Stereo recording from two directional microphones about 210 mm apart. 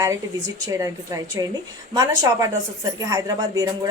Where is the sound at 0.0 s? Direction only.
15° right (ahead or behind).